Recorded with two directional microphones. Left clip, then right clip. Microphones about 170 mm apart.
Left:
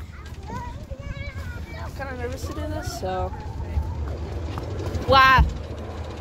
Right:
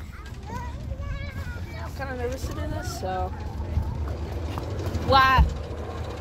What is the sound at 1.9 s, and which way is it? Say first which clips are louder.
Speech: right 1 dB; 5° left (ahead or behind).